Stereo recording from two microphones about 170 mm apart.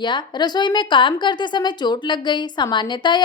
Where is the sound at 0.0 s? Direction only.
25° left (ahead or behind).